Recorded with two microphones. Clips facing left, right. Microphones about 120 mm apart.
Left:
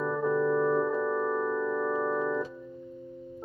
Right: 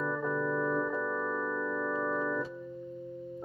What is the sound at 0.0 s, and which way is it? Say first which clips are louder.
Organ: left 5 dB; 20° left (ahead or behind).